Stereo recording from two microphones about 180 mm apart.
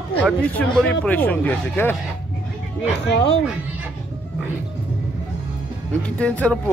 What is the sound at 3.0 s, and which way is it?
Speech, 70° left (ahead or behind).